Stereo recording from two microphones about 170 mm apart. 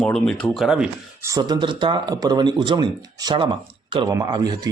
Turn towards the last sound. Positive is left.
turn(degrees=-25)  # may be behind; listen again after turning